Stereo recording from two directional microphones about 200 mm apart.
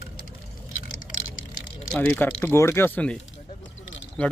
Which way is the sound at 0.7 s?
80° left.